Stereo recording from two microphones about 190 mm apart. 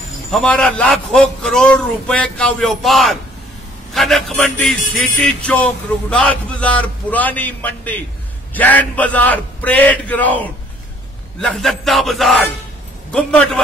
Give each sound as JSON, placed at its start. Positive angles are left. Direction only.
{"t": 0.3, "sound": "a man's voice", "side_deg": 5}
{"t": 11.5, "sound": "a man's voice", "side_deg": 0}